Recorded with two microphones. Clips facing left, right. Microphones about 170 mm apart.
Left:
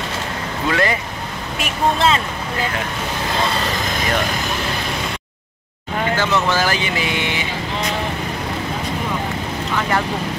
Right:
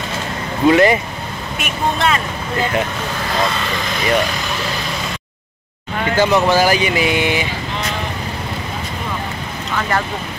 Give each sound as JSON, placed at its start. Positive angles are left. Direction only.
{"t": 0.7, "sound": "speech", "side_deg": -20}
{"t": 1.6, "sound": "speech", "side_deg": 30}
{"t": 6.1, "sound": "speech", "side_deg": -15}